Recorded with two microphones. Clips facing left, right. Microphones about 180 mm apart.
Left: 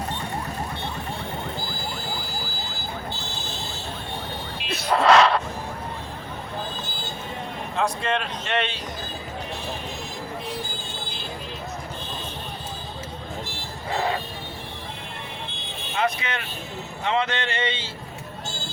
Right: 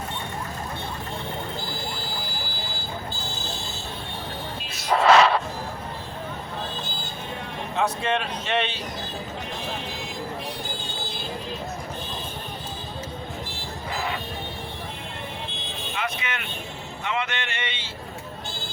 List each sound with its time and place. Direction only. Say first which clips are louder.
4.6 s a sound: left 8 dB; 60° left (ahead or behind)
4.9 s a sound: even; 5° right (ahead or behind)
7.8 s a man's voice: even; 5° right (ahead or behind)
13.9 s vehicle: left 5 dB; 35° left (ahead or behind)
16.0 s vehicle: left 6 dB; 35° left (ahead or behind)
17.1 s music: left 5 dB; 35° left (ahead or behind)